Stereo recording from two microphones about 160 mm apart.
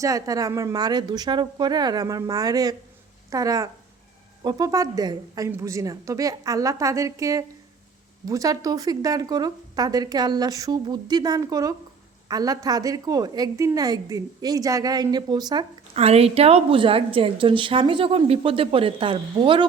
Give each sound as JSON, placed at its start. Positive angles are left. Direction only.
{"t": 0.0, "sound": "speech", "side_deg": -20}
{"t": 16.0, "sound": "a woman's voice", "side_deg": -40}